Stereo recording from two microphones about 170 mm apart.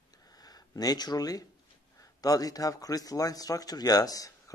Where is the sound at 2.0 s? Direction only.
20° left (ahead or behind).